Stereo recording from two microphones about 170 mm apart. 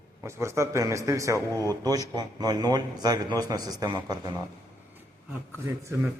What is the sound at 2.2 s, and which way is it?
A man's voice, 25° right (ahead or behind).